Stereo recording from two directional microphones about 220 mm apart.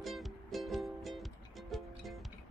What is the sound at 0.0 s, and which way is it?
Music, centre (ahead or behind).